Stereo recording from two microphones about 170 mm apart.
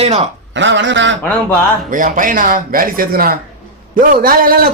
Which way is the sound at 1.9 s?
50° right (ahead or behind).